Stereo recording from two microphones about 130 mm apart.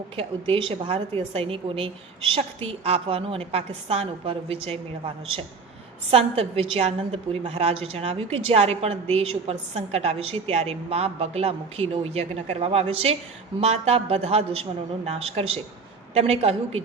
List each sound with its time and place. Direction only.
0.2 s a woman's voice: 45° right (ahead or behind)